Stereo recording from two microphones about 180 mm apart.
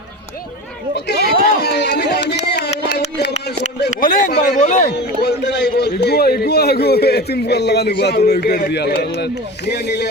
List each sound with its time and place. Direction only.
0.9 s a man's voice: 65° left (ahead or behind)
1.6 s a sound: 70° left (ahead or behind)
3.8 s speech: 50° left (ahead or behind)
5.2 s a man's voice: 75° left (ahead or behind)